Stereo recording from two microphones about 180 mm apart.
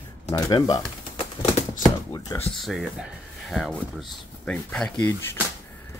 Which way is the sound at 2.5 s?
Centre (ahead or behind).